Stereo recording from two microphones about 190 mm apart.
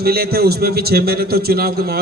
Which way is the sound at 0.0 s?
55° right (ahead or behind).